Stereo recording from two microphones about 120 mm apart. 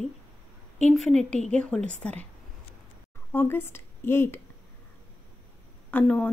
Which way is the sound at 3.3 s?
20° left (ahead or behind).